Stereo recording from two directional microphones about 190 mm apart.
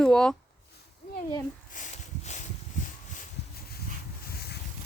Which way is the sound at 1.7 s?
40° left (ahead or behind).